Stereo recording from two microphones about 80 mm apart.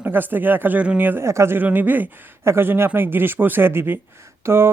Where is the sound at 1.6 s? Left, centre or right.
Right.